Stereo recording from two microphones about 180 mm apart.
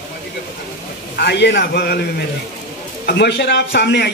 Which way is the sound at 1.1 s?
70° left (ahead or behind).